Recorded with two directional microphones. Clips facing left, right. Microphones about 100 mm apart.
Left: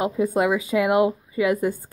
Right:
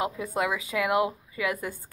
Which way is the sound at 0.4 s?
30° left (ahead or behind).